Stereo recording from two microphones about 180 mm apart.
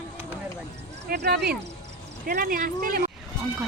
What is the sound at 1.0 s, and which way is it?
Speech, 65° right (ahead or behind).